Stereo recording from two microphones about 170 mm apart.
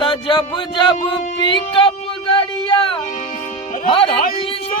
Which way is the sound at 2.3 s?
30° left (ahead or behind).